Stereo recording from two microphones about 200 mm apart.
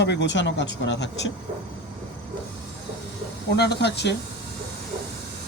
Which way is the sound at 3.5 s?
55° left (ahead or behind).